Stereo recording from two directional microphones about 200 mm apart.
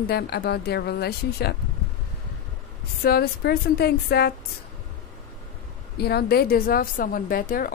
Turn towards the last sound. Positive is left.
turn(degrees=45)  # may be behind; listen again after turning